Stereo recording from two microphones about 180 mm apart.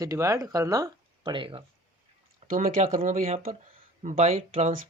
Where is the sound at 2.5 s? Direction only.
50° right (ahead or behind).